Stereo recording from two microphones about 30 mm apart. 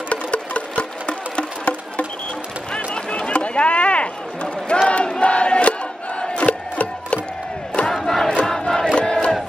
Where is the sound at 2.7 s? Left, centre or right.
Left.